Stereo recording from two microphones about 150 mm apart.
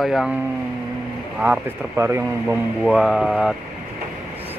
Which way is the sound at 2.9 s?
Centre (ahead or behind).